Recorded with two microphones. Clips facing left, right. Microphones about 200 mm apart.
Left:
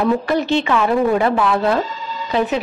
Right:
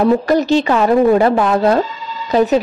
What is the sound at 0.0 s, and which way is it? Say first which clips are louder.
Speech: right 4 dB; 40° right (ahead or behind).